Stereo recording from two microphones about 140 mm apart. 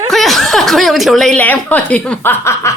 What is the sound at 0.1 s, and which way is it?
Speech, centre (ahead or behind).